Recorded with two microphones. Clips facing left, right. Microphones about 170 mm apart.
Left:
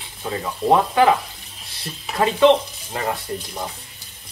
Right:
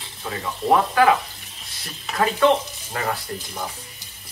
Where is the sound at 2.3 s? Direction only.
25° left (ahead or behind).